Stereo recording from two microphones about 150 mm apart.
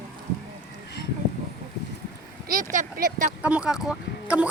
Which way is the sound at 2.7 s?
70° right (ahead or behind).